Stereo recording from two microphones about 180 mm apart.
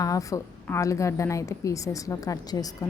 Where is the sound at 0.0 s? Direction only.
20° left (ahead or behind).